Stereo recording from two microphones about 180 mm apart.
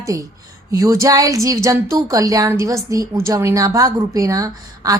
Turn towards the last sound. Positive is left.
turn(degrees=-20)  # may be behind; listen again after turning